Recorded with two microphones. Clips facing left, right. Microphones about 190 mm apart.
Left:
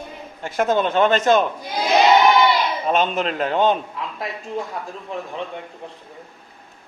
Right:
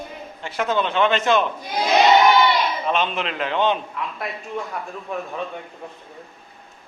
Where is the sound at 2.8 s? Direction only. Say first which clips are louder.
Left 3 dB; 45° left (ahead or behind).